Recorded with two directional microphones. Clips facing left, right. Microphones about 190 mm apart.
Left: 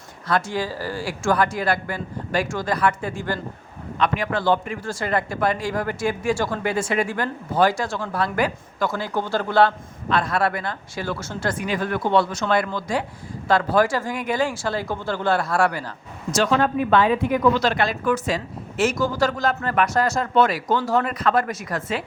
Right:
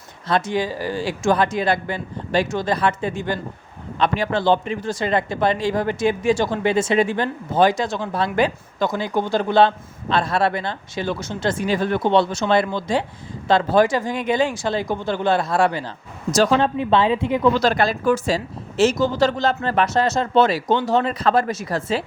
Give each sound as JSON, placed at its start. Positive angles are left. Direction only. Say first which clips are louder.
{"t": 0.3, "sound": "a man's voice", "louder": "right 3 dB", "side_deg": -20}
{"t": 3.9, "sound": "a man's voice", "louder": "right 2 dB", "side_deg": -30}
{"t": 16.3, "sound": "a man's voice", "louder": "right 3 dB", "side_deg": -35}